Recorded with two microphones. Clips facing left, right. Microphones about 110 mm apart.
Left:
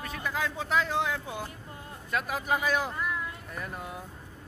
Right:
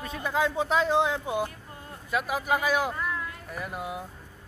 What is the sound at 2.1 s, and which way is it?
Speech, 5° right (ahead or behind).